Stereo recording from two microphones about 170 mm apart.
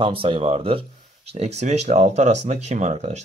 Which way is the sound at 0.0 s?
30° right (ahead or behind).